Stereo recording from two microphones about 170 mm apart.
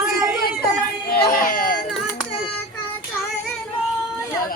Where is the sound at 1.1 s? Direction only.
60° left (ahead or behind).